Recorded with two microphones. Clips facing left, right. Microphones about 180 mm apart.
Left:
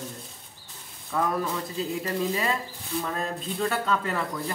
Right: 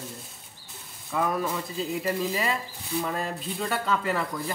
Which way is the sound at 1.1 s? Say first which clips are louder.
Even; 5° right (ahead or behind).